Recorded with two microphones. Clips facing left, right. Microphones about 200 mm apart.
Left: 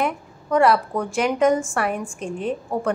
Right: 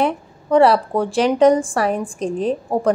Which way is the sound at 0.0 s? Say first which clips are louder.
Right 5 dB; 30° right (ahead or behind).